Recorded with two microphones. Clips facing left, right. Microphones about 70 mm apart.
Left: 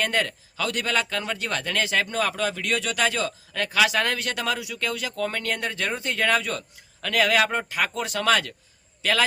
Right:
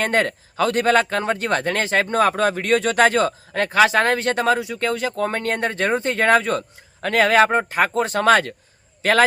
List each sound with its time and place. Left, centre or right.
0.0 s a man's voice: right